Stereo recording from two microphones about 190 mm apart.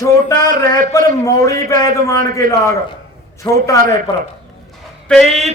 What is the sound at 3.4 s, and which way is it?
Speech, 20° left (ahead or behind).